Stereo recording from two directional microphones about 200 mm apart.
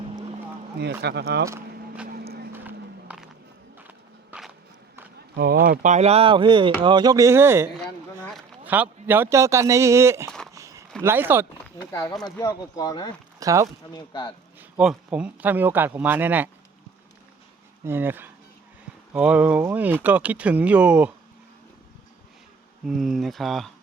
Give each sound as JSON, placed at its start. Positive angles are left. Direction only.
{"t": 0.8, "sound": "speech", "side_deg": -55}
{"t": 2.0, "sound": "a sound", "side_deg": -50}
{"t": 2.5, "sound": "music", "side_deg": -10}
{"t": 3.8, "sound": "walk", "side_deg": -5}
{"t": 5.4, "sound": "a man's voice", "side_deg": -50}
{"t": 10.5, "sound": "a sound", "side_deg": -15}
{"t": 11.0, "sound": "speech", "side_deg": -10}
{"t": 11.8, "sound": "speech", "side_deg": 15}
{"t": 13.4, "sound": "speech", "side_deg": -15}
{"t": 13.9, "sound": "speech", "side_deg": 20}
{"t": 14.6, "sound": "speech", "side_deg": -5}
{"t": 17.8, "sound": "speech", "side_deg": -10}
{"t": 22.9, "sound": "speech", "side_deg": 0}